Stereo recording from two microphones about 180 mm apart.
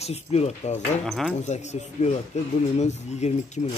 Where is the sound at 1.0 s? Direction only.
Centre (ahead or behind).